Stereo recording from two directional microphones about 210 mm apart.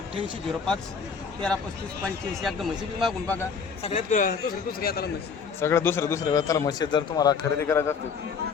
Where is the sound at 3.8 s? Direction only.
35° left (ahead or behind).